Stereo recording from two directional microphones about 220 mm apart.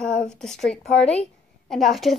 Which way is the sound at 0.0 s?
5° left (ahead or behind).